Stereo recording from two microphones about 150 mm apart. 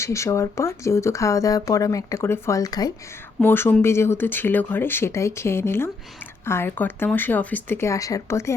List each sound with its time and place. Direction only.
0.0 s speech: 20° left (ahead or behind)
3.4 s speech: 15° left (ahead or behind)